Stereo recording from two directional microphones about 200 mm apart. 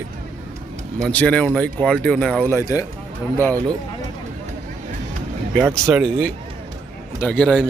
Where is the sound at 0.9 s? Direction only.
5° left (ahead or behind).